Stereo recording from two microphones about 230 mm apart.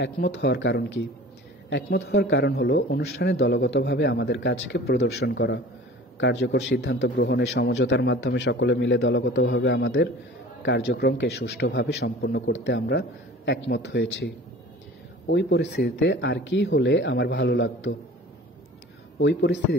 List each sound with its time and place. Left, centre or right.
0.0 s a man's voice: left
19.1 s a man's voice: left